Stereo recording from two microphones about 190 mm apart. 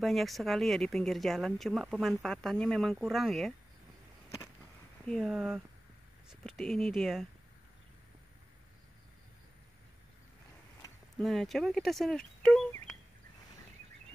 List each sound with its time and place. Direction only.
0.0 s speech: centre (ahead or behind)
5.0 s speech: centre (ahead or behind)
10.8 s a sound: 15° left (ahead or behind)
11.1 s speech: centre (ahead or behind)